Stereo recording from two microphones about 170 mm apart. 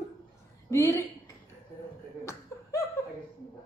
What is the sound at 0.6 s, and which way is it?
Speech, 20° left (ahead or behind).